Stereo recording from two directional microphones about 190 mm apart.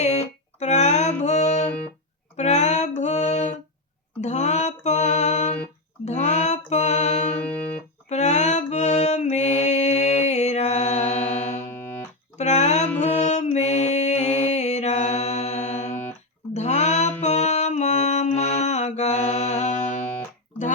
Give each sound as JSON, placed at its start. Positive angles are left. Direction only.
{"t": 0.0, "sound": "a sound", "side_deg": 35}
{"t": 1.2, "sound": "music", "side_deg": 35}
{"t": 4.2, "sound": "female singing", "side_deg": 40}
{"t": 6.1, "sound": "music", "side_deg": 35}
{"t": 11.7, "sound": "music", "side_deg": 10}
{"t": 12.4, "sound": "music", "side_deg": 35}
{"t": 13.0, "sound": "mantra", "side_deg": 35}